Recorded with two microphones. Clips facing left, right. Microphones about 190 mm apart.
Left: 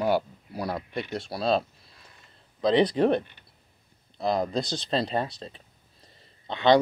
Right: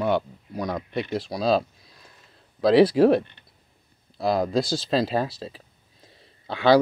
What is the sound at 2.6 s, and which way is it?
Speech, 5° right (ahead or behind).